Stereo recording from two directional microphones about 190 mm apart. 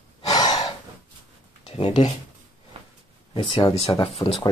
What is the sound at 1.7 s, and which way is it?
Speech, 25° left (ahead or behind).